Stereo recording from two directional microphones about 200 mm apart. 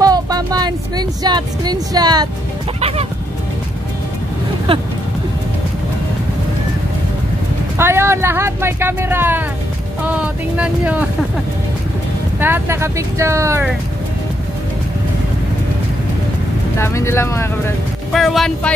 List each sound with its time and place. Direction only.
0.0 s a sound: 20° right (ahead or behind)
7.7 s speech: 10° right (ahead or behind)
12.4 s speech: 10° right (ahead or behind)
16.7 s speech: 15° left (ahead or behind)
18.1 s speech: centre (ahead or behind)